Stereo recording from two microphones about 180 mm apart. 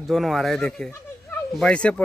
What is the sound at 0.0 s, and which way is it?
Speech, centre (ahead or behind).